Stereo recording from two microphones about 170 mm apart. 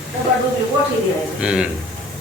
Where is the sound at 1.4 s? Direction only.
5° right (ahead or behind).